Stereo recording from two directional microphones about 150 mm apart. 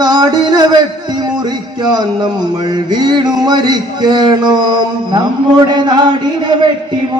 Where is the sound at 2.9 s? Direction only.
30° right (ahead or behind).